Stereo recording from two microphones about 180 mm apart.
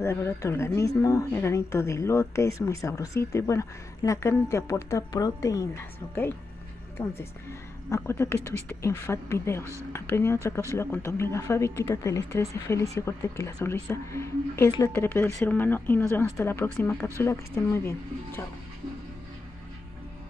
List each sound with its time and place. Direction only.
0.0 s speech: 15° left (ahead or behind)
7.0 s speech: 15° left (ahead or behind)